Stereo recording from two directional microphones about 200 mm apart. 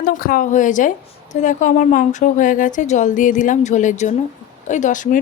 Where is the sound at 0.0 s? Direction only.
45° left (ahead or behind).